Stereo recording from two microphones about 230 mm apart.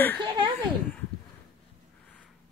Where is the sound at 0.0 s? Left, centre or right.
Centre.